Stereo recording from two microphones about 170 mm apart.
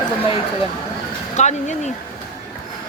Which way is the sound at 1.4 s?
40° left (ahead or behind).